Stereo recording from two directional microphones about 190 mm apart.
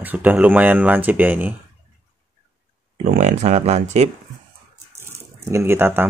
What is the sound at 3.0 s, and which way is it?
Speech, 35° right (ahead or behind).